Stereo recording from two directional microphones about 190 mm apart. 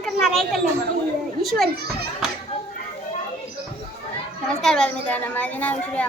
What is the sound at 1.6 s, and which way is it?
Speech, 55° right (ahead or behind).